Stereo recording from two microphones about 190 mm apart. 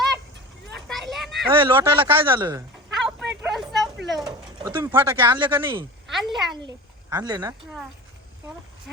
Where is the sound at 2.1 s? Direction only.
10° right (ahead or behind).